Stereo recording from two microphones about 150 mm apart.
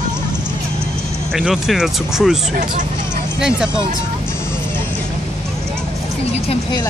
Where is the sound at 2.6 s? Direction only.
55° right (ahead or behind).